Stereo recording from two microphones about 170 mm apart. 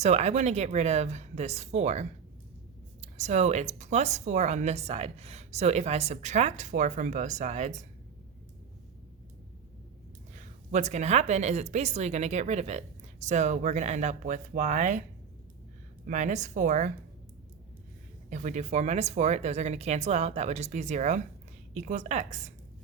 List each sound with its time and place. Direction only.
0.0 s speech: 40° right (ahead or behind)
10.3 s speech: 45° right (ahead or behind)
16.0 s speech: 45° right (ahead or behind)
18.3 s speech: 45° right (ahead or behind)